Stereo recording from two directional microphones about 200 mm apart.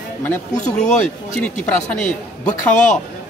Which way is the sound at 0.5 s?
35° left (ahead or behind).